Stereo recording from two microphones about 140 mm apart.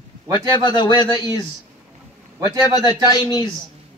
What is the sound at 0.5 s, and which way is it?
Speech, 30° left (ahead or behind).